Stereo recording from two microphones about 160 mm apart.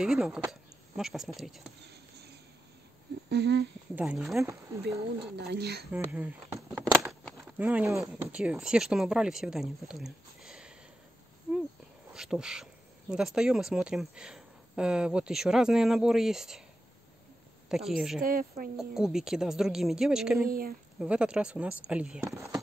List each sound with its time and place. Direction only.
0.0 s speech: 5° right (ahead or behind)
1.9 s a sound: 90° right
3.9 s speech: 10° right (ahead or behind)
4.4 s speech: 20° right (ahead or behind)
5.3 s speech: 90° right
5.9 s speech: 10° right (ahead or behind)
7.1 s a sound: centre (ahead or behind)
7.6 s speech: 15° right (ahead or behind)
12.1 s speech: 5° right (ahead or behind)
17.6 s speech: 5° right (ahead or behind)
18.2 s speech: 60° right (ahead or behind)
18.8 s speech: 5° right (ahead or behind)
20.4 s speech: 65° right (ahead or behind)
21.0 s speech: 5° right (ahead or behind)